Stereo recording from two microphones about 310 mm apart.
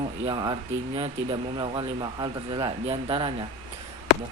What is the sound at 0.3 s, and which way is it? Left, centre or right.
Speech, centre.